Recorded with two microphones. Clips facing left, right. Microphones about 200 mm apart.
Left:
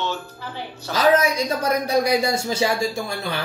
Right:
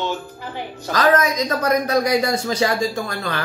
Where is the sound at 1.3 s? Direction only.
10° left (ahead or behind).